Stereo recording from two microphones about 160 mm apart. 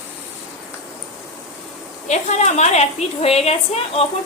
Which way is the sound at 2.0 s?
45° left (ahead or behind).